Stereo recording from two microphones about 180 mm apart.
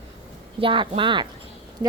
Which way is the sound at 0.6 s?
30° right (ahead or behind).